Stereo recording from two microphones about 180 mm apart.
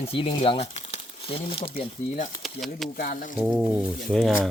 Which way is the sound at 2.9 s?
50° left (ahead or behind).